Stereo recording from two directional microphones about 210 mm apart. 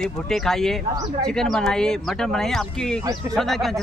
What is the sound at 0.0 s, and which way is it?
Speech, centre (ahead or behind).